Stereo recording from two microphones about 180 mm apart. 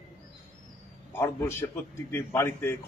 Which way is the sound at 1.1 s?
15° left (ahead or behind).